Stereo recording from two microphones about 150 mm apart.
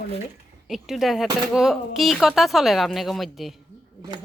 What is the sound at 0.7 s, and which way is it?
Speech, centre (ahead or behind).